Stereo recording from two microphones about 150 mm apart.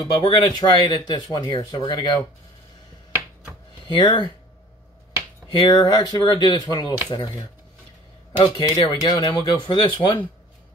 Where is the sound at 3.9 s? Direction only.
30° left (ahead or behind).